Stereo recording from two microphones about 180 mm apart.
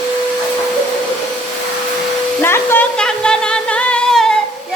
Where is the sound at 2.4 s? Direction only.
10° left (ahead or behind).